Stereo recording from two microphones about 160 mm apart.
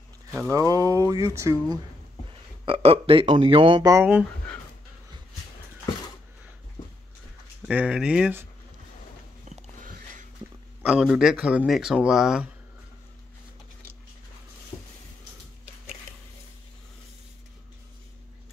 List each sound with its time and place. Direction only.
0.3 s speech: 15° right (ahead or behind)
2.6 s speech: 35° right (ahead or behind)
3.9 s speech: 10° right (ahead or behind)
7.6 s speech: 5° right (ahead or behind)
10.8 s speech: 5° right (ahead or behind)
14.7 s a sound: 10° left (ahead or behind)